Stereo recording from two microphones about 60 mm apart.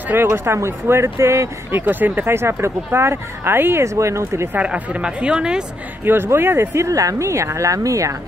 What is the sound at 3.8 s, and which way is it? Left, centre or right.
Speech, right.